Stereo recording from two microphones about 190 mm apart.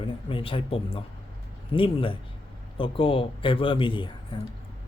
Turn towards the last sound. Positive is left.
turn(degrees=25)  # may be behind; listen again after turning